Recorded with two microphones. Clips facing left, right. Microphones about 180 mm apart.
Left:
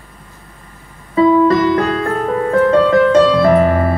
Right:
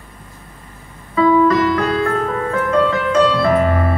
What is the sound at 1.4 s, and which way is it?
Music, 35° left (ahead or behind).